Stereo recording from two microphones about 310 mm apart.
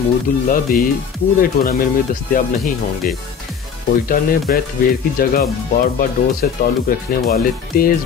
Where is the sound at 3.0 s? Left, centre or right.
Left.